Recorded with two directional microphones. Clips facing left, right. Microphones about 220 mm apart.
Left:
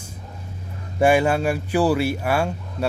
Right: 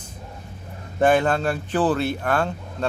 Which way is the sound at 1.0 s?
10° left (ahead or behind).